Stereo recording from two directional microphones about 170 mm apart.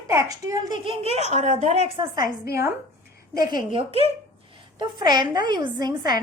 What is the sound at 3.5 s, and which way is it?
A woman's voice, 30° right (ahead or behind).